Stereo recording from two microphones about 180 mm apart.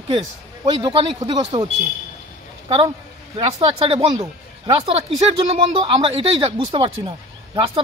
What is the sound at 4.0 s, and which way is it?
Speech, 25° right (ahead or behind).